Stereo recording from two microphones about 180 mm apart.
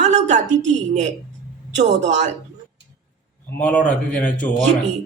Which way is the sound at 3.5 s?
10° left (ahead or behind).